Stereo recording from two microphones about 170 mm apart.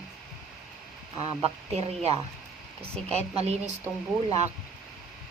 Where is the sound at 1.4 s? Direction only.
40° right (ahead or behind).